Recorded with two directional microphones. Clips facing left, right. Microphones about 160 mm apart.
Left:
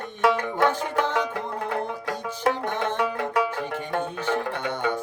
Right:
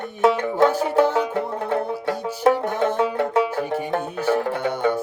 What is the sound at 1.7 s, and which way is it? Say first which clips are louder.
Music: right 7 dB; 25° right (ahead or behind).